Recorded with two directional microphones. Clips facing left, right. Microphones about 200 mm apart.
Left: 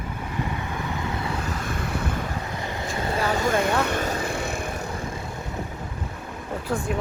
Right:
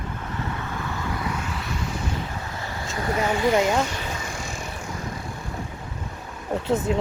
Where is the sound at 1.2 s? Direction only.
40° left (ahead or behind); by 2.2 s 60° left (ahead or behind).